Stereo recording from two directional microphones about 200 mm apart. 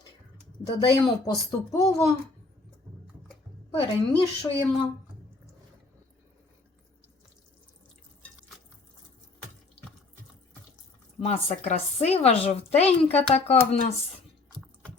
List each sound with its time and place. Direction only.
0.6 s speech: 20° left (ahead or behind)
3.7 s a woman's voice: 25° left (ahead or behind)
11.3 s speech: 30° left (ahead or behind)